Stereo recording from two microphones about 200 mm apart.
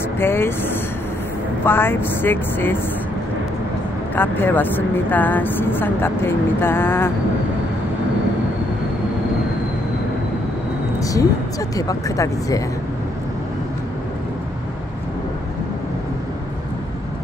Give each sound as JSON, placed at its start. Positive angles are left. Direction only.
{"t": 0.2, "sound": "a woman's voice", "side_deg": 10}
{"t": 1.6, "sound": "a woman's voice", "side_deg": 10}
{"t": 4.1, "sound": "a woman's voice", "side_deg": 10}
{"t": 11.0, "sound": "a sound", "side_deg": 15}
{"t": 11.7, "sound": "a woman's voice", "side_deg": 15}